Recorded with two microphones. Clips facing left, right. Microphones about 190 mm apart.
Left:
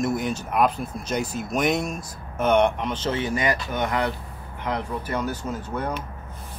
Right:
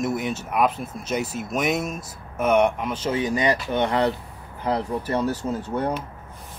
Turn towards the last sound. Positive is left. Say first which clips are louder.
# right 3 dB
turn(degrees=-35)  # may be behind; listen again after turning